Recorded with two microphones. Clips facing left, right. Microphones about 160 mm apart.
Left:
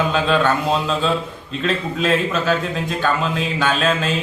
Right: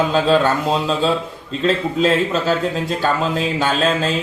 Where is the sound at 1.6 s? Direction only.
30° right (ahead or behind).